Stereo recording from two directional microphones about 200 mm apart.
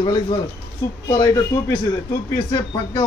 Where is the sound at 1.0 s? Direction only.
15° left (ahead or behind).